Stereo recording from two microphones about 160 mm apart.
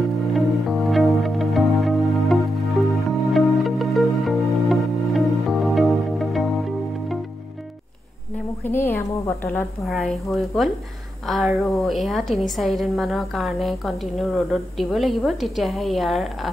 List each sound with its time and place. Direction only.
0.3 s music: centre (ahead or behind)
8.6 s a sound: 15° left (ahead or behind)
9.8 s a woman's voice: centre (ahead or behind)